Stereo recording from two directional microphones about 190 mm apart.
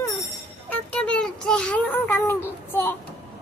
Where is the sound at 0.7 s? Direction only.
5° left (ahead or behind).